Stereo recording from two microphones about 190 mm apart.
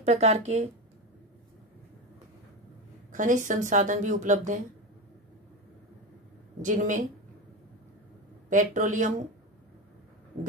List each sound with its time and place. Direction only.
0.0 s a woman's voice: 35° right (ahead or behind)
3.1 s a woman's voice: 45° right (ahead or behind)
6.6 s a woman's voice: 40° right (ahead or behind)
8.5 s a woman's voice: 40° right (ahead or behind)